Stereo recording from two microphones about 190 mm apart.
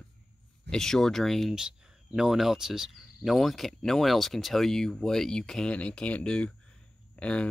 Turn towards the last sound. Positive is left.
turn(degrees=5)  # may be behind; listen again after turning